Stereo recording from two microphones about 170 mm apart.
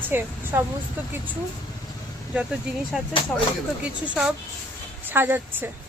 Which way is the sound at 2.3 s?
5° right (ahead or behind).